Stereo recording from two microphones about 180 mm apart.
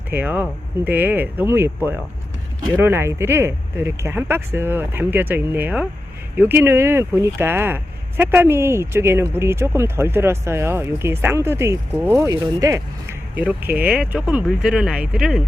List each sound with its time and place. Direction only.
0.1 s speech: 10° right (ahead or behind)